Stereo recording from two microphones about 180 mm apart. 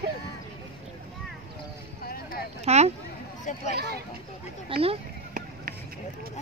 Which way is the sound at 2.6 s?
35° right (ahead or behind).